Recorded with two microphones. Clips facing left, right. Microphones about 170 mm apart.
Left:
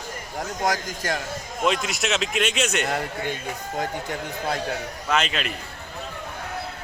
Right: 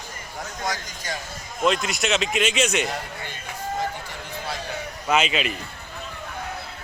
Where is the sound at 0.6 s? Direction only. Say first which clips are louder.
Left 6 dB; 50° left (ahead or behind).